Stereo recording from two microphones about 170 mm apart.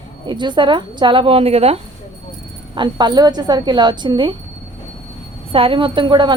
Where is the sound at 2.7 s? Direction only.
25° right (ahead or behind).